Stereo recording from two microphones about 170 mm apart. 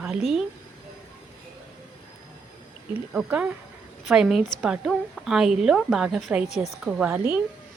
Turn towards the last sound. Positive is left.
turn(degrees=-15)  # may be behind; listen again after turning